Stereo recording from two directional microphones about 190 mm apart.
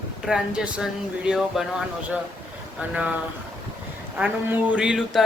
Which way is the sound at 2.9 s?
5° right (ahead or behind).